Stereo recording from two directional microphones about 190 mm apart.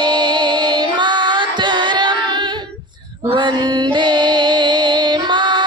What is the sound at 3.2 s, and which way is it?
Mantra, 25° right (ahead or behind).